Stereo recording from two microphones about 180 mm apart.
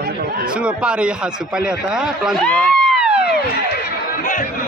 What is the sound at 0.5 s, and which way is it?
A man's voice, 5° right (ahead or behind).